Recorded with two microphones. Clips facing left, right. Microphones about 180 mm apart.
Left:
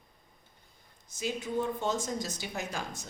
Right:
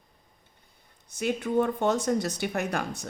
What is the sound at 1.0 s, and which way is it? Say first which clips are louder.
Speech: right 6 dB; 60° right (ahead or behind).